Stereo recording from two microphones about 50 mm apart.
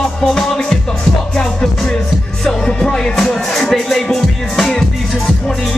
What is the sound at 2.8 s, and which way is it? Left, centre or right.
Music, centre.